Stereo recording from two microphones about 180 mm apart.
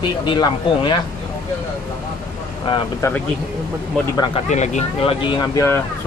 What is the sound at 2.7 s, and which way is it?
A man's voice, 25° left (ahead or behind).